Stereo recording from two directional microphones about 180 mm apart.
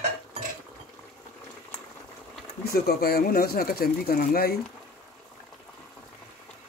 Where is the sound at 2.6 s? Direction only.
60° left (ahead or behind).